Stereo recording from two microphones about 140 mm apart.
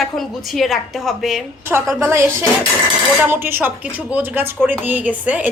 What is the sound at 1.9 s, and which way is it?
A woman's voice, 20° right (ahead or behind).